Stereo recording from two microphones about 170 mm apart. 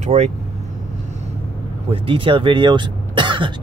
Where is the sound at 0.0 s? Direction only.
40° right (ahead or behind).